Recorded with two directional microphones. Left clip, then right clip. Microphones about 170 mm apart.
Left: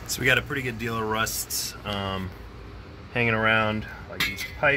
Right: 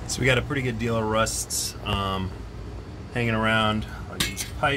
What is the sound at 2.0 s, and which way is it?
Speech, 40° left (ahead or behind).